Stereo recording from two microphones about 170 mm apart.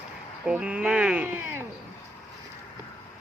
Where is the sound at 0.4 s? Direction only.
5° right (ahead or behind).